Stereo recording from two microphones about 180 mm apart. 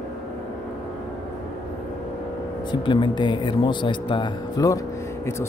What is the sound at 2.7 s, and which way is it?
Speech, 25° left (ahead or behind).